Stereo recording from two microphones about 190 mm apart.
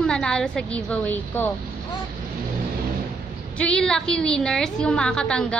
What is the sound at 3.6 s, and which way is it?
A woman's voice, 5° left (ahead or behind).